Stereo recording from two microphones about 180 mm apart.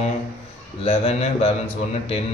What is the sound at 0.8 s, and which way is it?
Speech, 35° left (ahead or behind).